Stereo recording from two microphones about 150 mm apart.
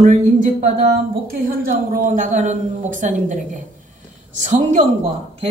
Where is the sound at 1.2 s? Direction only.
70° right (ahead or behind).